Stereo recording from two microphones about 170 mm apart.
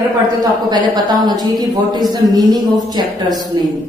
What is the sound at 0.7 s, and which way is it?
A woman's voice, 25° right (ahead or behind).